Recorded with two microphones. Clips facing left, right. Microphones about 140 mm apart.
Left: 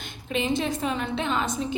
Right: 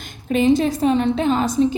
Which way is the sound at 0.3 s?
40° right (ahead or behind).